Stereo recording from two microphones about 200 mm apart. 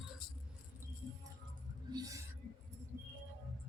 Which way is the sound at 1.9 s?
20° right (ahead or behind).